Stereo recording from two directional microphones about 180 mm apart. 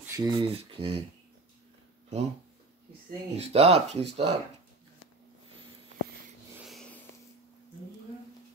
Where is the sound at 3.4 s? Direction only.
35° right (ahead or behind).